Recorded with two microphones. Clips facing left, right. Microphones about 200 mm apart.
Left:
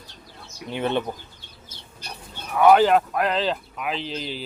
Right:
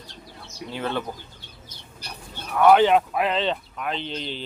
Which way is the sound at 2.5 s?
5° left (ahead or behind).